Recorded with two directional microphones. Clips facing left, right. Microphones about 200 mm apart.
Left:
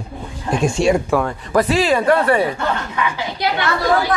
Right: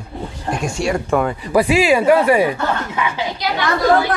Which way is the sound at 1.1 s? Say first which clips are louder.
Right 1 dB; 5° right (ahead or behind).